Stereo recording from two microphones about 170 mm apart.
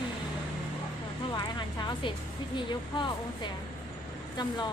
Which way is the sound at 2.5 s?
30° left (ahead or behind).